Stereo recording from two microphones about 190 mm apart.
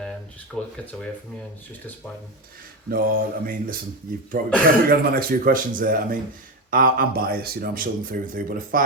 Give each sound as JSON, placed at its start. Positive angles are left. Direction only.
{"t": 0.5, "sound": "speech", "side_deg": 0}
{"t": 2.9, "sound": "speech", "side_deg": -50}